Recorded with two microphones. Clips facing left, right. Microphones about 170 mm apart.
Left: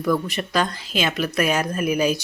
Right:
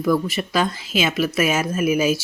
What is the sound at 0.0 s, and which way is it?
Speech, 5° right (ahead or behind).